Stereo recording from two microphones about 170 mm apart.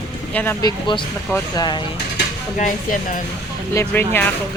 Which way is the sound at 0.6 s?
30° left (ahead or behind).